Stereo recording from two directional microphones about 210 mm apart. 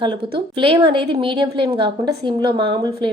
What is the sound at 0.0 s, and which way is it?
A woman's voice, 25° right (ahead or behind).